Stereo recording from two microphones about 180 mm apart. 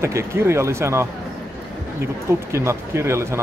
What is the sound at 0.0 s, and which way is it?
Speech, 15° right (ahead or behind).